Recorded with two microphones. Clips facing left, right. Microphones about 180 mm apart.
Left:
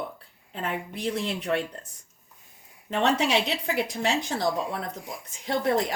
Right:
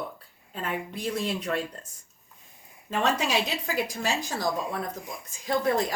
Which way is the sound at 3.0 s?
25° left (ahead or behind).